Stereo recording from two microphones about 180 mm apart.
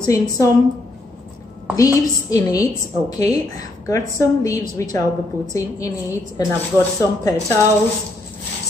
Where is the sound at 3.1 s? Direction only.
20° left (ahead or behind).